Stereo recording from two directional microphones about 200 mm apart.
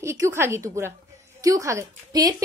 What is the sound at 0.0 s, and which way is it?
A woman's voice, 15° right (ahead or behind).